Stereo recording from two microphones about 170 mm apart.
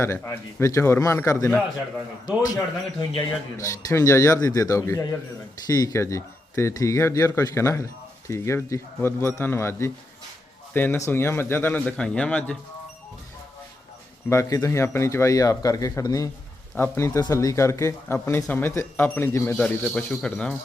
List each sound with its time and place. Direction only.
0.0 s speech: 15° left (ahead or behind)
3.6 s speech: 20° left (ahead or behind)
14.3 s speech: 20° left (ahead or behind)